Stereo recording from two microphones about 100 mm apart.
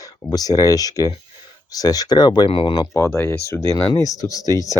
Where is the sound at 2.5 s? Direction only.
65° left (ahead or behind).